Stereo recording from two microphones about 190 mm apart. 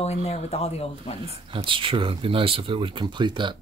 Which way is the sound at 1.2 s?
30° right (ahead or behind).